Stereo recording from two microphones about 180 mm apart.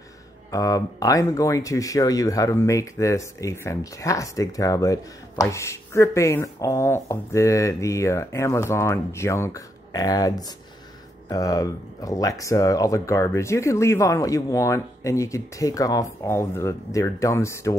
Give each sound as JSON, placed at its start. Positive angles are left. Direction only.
{"t": 0.5, "sound": "speech", "side_deg": 20}